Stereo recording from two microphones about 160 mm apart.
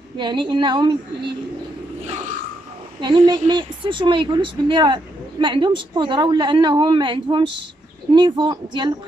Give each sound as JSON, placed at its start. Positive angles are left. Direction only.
{"t": 0.2, "sound": "a woman's voice", "side_deg": -30}
{"t": 3.0, "sound": "a woman's voice", "side_deg": -30}